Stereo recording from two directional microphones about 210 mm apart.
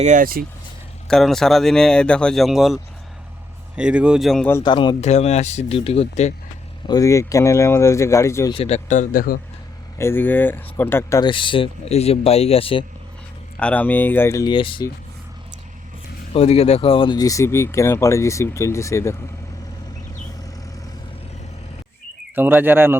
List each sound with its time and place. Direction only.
0.0 s speech: 35° right (ahead or behind)
1.0 s speech: centre (ahead or behind)
4.6 s speech: 20° left (ahead or behind)
6.8 s speech: 15° left (ahead or behind)
8.5 s speech: 30° left (ahead or behind)
10.0 s speech: 10° left (ahead or behind); by 12.8 s 25° left (ahead or behind)
13.6 s speech: 5° left (ahead or behind); by 14.8 s 25° left (ahead or behind)
16.3 s speech: 30° left (ahead or behind); by 19.1 s 15° left (ahead or behind)
22.4 s speech: 10° right (ahead or behind)